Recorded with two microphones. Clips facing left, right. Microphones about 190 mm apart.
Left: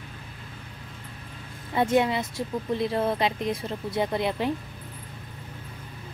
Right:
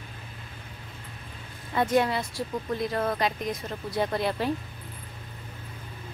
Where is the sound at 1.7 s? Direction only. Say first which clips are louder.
Left 1 dB; 20° left (ahead or behind).